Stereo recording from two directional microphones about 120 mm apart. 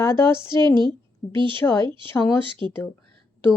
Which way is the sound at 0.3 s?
40° right (ahead or behind).